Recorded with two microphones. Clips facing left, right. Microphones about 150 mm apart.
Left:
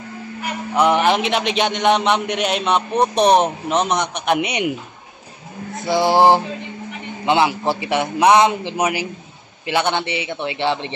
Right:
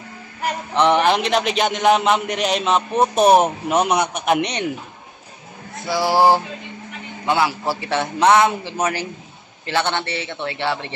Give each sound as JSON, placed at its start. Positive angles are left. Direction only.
{"t": 0.7, "sound": "a man's voice", "side_deg": 5}
{"t": 4.4, "sound": "a man's voice", "side_deg": 10}
{"t": 5.9, "sound": "male singing", "side_deg": 20}
{"t": 7.2, "sound": "a man's voice", "side_deg": 20}